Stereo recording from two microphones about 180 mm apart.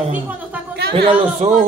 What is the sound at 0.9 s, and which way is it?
Speech, 30° right (ahead or behind).